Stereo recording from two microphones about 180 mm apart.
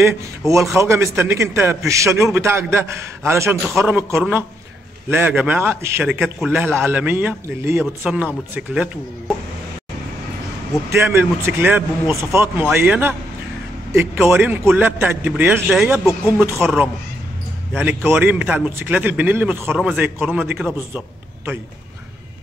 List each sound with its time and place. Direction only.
0.5 s speech: 15° right (ahead or behind)
10.9 s speech: 15° right (ahead or behind)